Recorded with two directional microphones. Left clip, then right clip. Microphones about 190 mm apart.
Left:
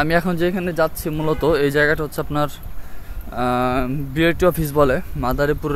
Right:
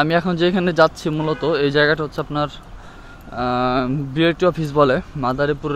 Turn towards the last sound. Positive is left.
turn(degrees=15)  # may be behind; listen again after turning